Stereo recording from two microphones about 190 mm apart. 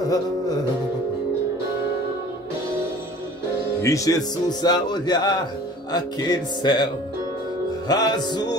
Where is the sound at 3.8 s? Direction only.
15° left (ahead or behind).